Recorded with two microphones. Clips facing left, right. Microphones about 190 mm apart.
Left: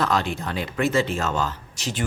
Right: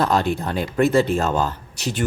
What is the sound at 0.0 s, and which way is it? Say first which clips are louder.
Speech: right 4 dB; 45° right (ahead or behind).